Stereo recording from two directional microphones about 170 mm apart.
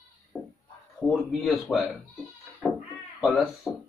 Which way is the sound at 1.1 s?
Centre (ahead or behind).